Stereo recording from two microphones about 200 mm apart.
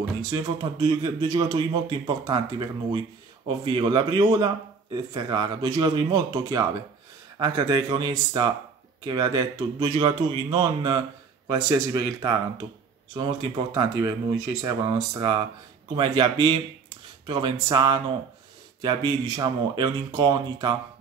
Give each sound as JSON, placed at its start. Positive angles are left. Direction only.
{"t": 0.2, "sound": "speech", "side_deg": -20}